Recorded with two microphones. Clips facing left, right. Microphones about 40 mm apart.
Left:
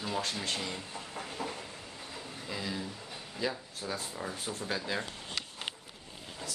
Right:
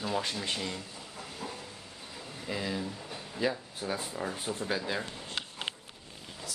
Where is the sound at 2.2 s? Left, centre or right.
Centre.